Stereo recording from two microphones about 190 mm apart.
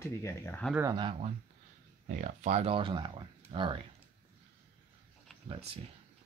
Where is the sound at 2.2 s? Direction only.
40° right (ahead or behind).